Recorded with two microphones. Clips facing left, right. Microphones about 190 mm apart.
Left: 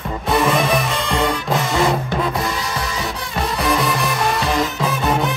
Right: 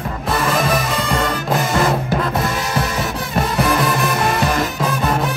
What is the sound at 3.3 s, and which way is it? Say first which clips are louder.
Music: right 2 dB; centre (ahead or behind).